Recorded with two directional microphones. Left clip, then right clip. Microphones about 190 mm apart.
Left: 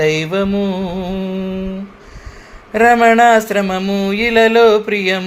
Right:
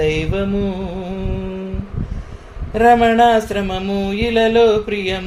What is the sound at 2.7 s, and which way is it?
Speech, 15° left (ahead or behind).